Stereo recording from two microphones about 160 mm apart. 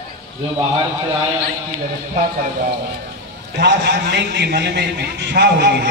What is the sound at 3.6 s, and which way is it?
A man's voice, 90° right.